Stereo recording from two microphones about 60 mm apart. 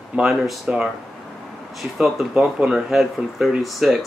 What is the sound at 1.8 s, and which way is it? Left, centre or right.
Speech, centre.